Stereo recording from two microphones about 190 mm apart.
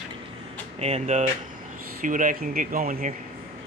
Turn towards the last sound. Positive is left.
turn(degrees=-45)  # may be behind; listen again after turning